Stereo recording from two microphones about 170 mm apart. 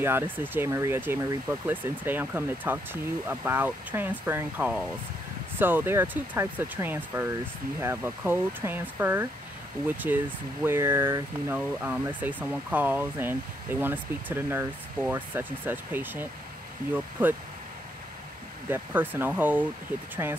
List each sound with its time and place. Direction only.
0.0 s speech: 10° right (ahead or behind)
18.7 s speech: 10° right (ahead or behind)